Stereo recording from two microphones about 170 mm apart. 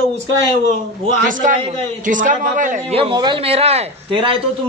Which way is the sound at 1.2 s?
50° right (ahead or behind).